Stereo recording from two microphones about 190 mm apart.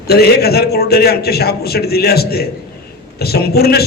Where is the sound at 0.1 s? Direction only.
55° left (ahead or behind).